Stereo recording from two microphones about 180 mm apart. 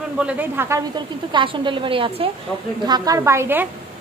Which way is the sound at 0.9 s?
25° right (ahead or behind).